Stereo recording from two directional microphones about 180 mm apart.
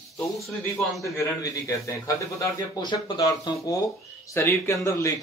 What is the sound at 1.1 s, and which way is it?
A man's voice, 15° left (ahead or behind).